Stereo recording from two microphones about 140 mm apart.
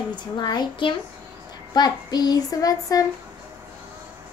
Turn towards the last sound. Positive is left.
turn(degrees=25)  # may be behind; listen again after turning